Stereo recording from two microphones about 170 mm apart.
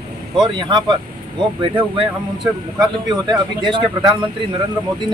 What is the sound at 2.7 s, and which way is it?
Speech, 25° right (ahead or behind).